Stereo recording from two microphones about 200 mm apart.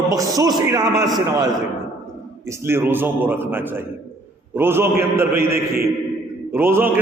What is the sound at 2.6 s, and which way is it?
A man's voice, 10° right (ahead or behind).